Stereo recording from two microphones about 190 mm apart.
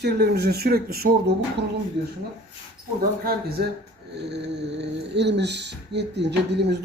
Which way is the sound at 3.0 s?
50° right (ahead or behind).